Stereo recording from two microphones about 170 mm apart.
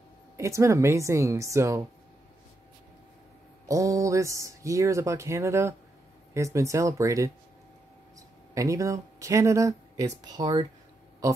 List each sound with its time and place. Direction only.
0.4 s speech: 15° right (ahead or behind)
3.6 s speech: 20° right (ahead or behind)
8.5 s speech: 20° right (ahead or behind)